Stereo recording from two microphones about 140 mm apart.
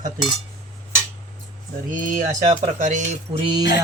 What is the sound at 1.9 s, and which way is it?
Speech, 70° right (ahead or behind).